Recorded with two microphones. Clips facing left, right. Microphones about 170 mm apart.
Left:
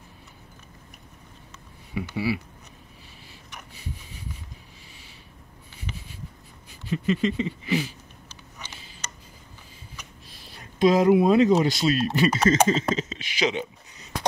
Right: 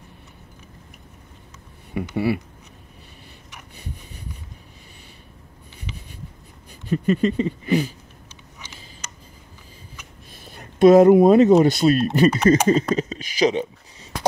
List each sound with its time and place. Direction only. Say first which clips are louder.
2.1 s speech: right 5 dB; 55° right (ahead or behind)
6.9 s a sound: right 4 dB; 45° right (ahead or behind)
10.3 s speech: right 6 dB; 50° right (ahead or behind)